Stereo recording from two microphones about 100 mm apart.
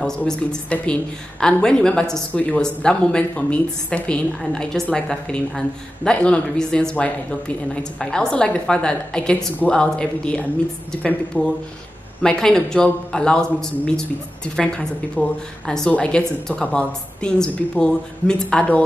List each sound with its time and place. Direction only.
0.4 s speech: 10° left (ahead or behind)